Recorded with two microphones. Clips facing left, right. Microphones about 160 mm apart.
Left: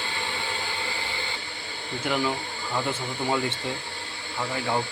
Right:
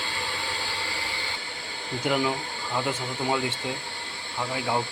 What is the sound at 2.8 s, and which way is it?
Speech, 5° right (ahead or behind).